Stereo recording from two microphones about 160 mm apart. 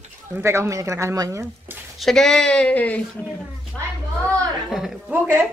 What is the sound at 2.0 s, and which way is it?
Speech, 5° left (ahead or behind).